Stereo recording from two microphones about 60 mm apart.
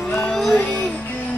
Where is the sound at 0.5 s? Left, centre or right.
Centre.